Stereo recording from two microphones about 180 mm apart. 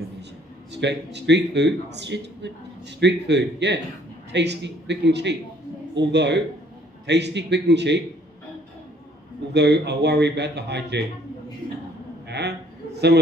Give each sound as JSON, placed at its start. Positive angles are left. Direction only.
{"t": 0.7, "sound": "a man's voice", "side_deg": -75}
{"t": 9.5, "sound": "a man's voice", "side_deg": -70}
{"t": 12.3, "sound": "a man's voice", "side_deg": -65}